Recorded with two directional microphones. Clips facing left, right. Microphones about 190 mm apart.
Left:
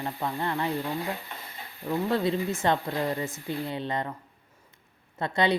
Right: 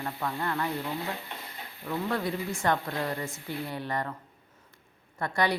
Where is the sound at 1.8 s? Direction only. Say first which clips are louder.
Left 4 dB; 25° left (ahead or behind).